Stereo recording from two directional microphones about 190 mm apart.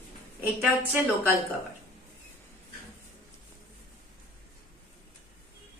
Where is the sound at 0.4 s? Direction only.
10° right (ahead or behind).